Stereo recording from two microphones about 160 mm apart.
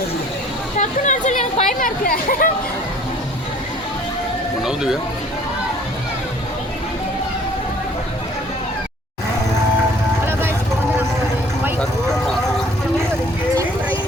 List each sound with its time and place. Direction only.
0.8 s speech: 50° left (ahead or behind)
4.6 s speech: 5° right (ahead or behind)